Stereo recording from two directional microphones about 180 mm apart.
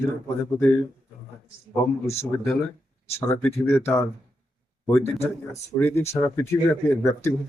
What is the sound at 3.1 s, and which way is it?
Speech, 10° left (ahead or behind).